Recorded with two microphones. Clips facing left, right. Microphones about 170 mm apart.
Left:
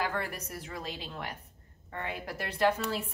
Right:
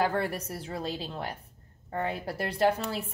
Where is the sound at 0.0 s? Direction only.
30° right (ahead or behind).